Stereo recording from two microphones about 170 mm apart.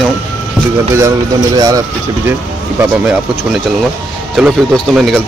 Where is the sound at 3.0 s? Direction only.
5° right (ahead or behind).